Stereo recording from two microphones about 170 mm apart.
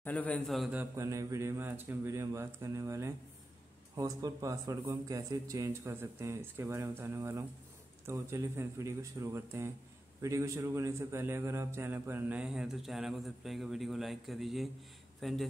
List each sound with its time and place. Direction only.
0.0 s a man's voice: 10° left (ahead or behind)
0.9 s a man's voice: 20° right (ahead or behind); by 15.4 s centre (ahead or behind)